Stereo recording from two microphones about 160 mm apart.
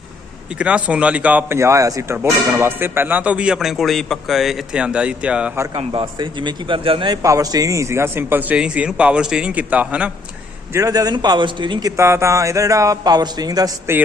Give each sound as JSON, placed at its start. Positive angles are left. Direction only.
{"t": 0.6, "sound": "speech", "side_deg": -5}
{"t": 5.7, "sound": "speech", "side_deg": -30}
{"t": 10.7, "sound": "a man's voice", "side_deg": -20}